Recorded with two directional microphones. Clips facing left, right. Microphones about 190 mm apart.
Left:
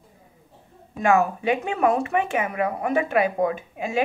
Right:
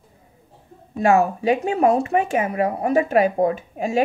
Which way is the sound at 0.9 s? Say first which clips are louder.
Right 3 dB; 35° right (ahead or behind).